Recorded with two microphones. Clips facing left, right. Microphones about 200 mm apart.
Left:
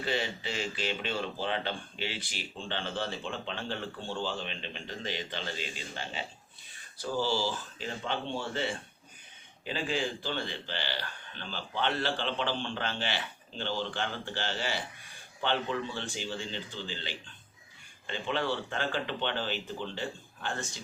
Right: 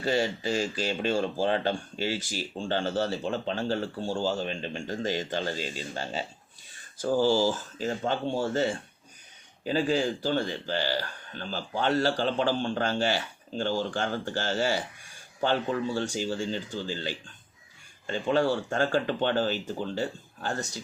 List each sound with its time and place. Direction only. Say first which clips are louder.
0.0 s a man's voice: right 6 dB; 40° right (ahead or behind)